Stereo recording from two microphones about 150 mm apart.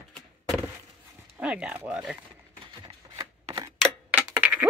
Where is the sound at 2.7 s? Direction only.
30° right (ahead or behind).